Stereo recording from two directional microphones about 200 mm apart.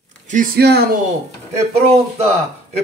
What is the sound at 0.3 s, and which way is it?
Speech, 50° right (ahead or behind).